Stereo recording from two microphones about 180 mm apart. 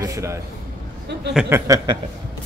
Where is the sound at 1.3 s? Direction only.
15° right (ahead or behind).